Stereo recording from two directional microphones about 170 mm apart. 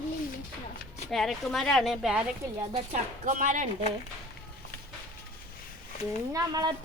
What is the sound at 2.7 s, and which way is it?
Speech, 45° right (ahead or behind).